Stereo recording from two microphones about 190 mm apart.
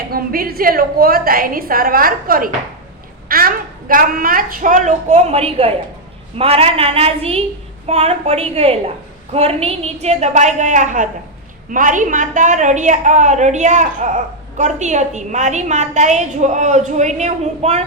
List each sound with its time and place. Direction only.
0.1 s a woman's voice: 50° right (ahead or behind); by 17.8 s 35° right (ahead or behind)